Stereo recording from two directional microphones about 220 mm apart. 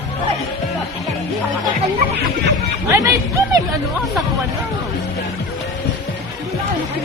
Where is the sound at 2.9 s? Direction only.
15° right (ahead or behind).